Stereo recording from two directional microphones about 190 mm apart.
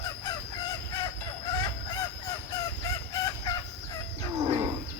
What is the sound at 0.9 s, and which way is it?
Train, 20° left (ahead or behind).